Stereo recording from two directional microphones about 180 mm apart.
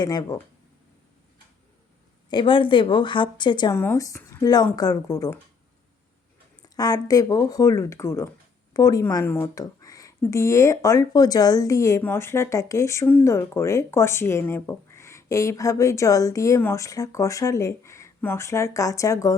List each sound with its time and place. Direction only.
0.0 s speech: 20° left (ahead or behind)
2.3 s speech: 30° left (ahead or behind)
6.6 s a woman's voice: 20° left (ahead or behind)